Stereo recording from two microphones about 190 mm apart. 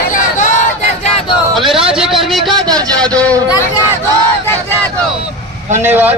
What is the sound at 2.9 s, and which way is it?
Speech, 5° left (ahead or behind).